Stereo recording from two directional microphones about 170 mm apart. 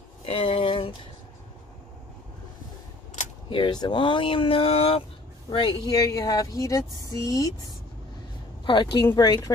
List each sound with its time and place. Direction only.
0.2 s a sound: 30° left (ahead or behind)
3.4 s speech: 30° left (ahead or behind)
5.5 s speech: 20° left (ahead or behind)
8.9 s speech: 25° left (ahead or behind)